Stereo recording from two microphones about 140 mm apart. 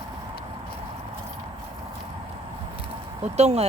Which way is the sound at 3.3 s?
50° right (ahead or behind).